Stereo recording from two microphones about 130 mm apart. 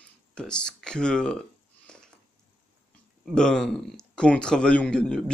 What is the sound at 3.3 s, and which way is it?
A man's voice, 5° left (ahead or behind).